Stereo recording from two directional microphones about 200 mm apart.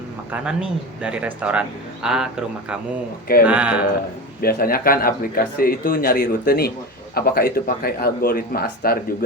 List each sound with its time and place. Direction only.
0.4 s a man's voice: 5° right (ahead or behind)
4.4 s speech: 45° left (ahead or behind)